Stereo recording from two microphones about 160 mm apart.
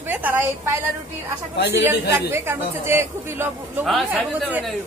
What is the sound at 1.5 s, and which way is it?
Speech, 90° left.